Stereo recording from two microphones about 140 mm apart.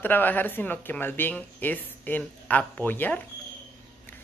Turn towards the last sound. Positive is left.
turn(degrees=15)  # may be behind; listen again after turning